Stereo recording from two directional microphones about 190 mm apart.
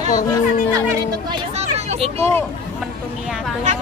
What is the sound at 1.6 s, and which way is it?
Hubbub, 35° right (ahead or behind).